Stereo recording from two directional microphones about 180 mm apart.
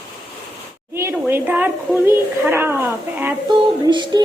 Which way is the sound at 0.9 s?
15° right (ahead or behind).